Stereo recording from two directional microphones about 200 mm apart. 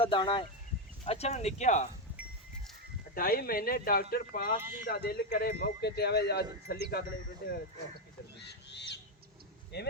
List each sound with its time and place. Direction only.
0.0 s speech: 25° left (ahead or behind)
3.2 s speech: 45° left (ahead or behind)
8.4 s crow: 60° left (ahead or behind)
9.7 s speech: 60° left (ahead or behind)